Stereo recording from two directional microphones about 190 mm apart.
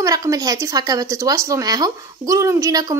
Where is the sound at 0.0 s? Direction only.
20° right (ahead or behind).